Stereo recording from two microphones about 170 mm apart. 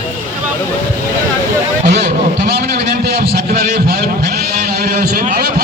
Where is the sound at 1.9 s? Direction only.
75° right (ahead or behind).